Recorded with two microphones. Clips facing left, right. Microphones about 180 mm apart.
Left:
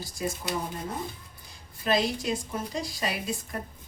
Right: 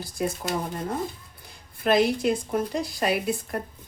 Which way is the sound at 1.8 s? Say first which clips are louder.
Right 5 dB; 55° right (ahead or behind).